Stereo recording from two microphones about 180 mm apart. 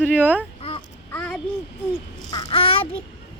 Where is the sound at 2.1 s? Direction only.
20° left (ahead or behind).